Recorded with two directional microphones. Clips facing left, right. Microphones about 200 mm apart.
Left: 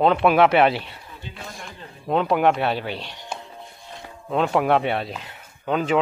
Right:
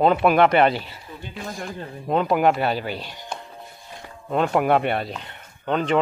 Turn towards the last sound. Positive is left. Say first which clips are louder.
# even
turn(degrees=5)  # may be behind; listen again after turning